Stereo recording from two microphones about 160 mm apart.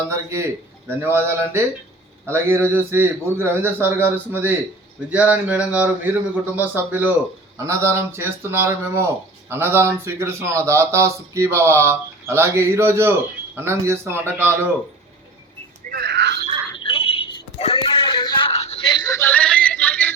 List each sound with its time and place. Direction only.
0.1 s speech: 15° right (ahead or behind)
15.9 s wail: 85° right
16.7 s a sound: 35° left (ahead or behind); by 20.1 s 10° left (ahead or behind)